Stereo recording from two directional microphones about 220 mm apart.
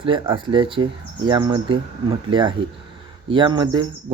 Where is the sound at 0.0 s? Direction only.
25° right (ahead or behind).